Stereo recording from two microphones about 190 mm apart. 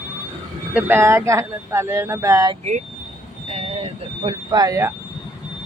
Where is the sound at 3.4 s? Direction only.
35° right (ahead or behind); by 4.9 s 20° right (ahead or behind).